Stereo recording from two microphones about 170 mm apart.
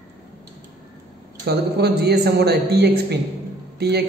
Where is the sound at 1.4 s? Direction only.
75° right (ahead or behind).